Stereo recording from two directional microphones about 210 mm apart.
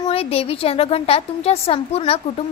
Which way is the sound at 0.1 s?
30° left (ahead or behind).